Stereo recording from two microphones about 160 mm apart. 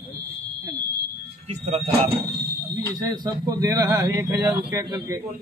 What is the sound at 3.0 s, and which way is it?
Speech, 25° right (ahead or behind).